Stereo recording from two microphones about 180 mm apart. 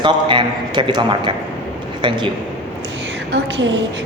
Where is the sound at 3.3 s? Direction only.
90° right.